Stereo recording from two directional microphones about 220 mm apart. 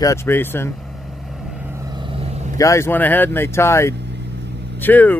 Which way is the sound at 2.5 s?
15° left (ahead or behind).